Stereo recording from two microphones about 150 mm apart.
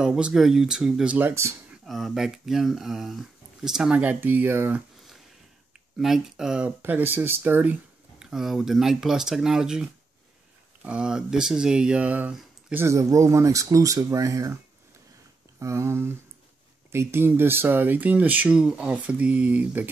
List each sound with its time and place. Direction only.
0.0 s speech: 5° right (ahead or behind)
1.9 s speech: centre (ahead or behind)
5.9 s speech: centre (ahead or behind)
12.8 s speech: 20° right (ahead or behind)
15.6 s speech: 20° right (ahead or behind)